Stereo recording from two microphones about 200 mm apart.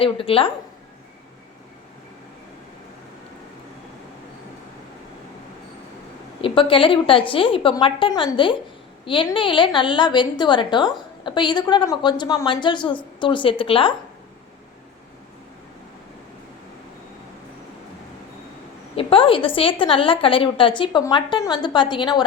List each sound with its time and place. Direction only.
0.0 s a woman's voice: 25° left (ahead or behind)
6.4 s a woman's voice: 25° left (ahead or behind)
18.9 s a woman's voice: 25° left (ahead or behind)